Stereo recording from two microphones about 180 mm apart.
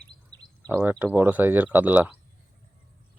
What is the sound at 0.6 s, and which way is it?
Speech, 10° right (ahead or behind).